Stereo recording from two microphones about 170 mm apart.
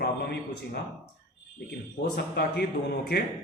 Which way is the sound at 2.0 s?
75° left (ahead or behind).